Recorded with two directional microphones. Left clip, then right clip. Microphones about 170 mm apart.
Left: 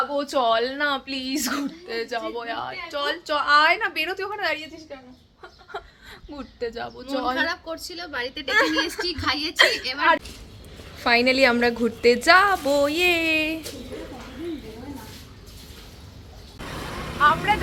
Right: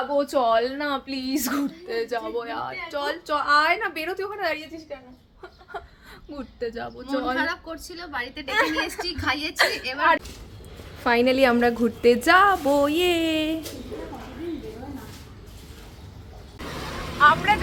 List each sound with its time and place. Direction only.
0.1 s speech: centre (ahead or behind)
5.7 s speech: 5° left (ahead or behind)
7.3 s a woman's voice: 20° right (ahead or behind)
8.5 s speech: centre (ahead or behind)
9.2 s a woman's voice: 30° right (ahead or behind)
9.6 s a woman's voice: centre (ahead or behind)
17.2 s a woman's voice: 5° right (ahead or behind)